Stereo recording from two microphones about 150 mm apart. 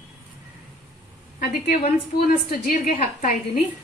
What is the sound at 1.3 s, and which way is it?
Speech, 70° left (ahead or behind).